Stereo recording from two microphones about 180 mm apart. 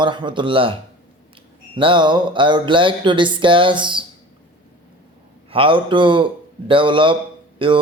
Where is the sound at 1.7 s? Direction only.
25° right (ahead or behind).